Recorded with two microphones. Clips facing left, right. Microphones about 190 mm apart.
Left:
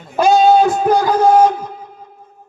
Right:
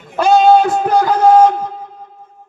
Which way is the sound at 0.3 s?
65° right (ahead or behind).